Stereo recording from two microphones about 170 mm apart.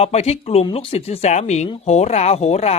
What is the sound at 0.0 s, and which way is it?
Speech, 40° left (ahead or behind).